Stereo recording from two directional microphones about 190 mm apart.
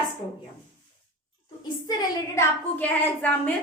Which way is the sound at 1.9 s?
20° left (ahead or behind).